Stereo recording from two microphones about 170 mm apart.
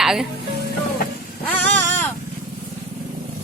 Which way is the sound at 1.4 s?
10° left (ahead or behind).